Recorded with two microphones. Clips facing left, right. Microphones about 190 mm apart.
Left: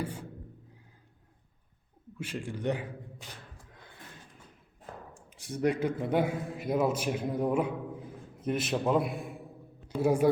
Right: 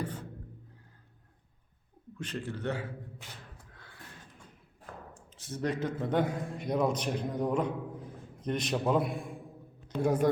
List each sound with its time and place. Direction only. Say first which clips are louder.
0.0 s music: left 1 dB; 10° left (ahead or behind)
2.1 s a man's voice: even; 10° left (ahead or behind)
3.8 s a sound: left 2 dB; 20° left (ahead or behind)
5.1 s a man's voice: left 4 dB; 15° left (ahead or behind)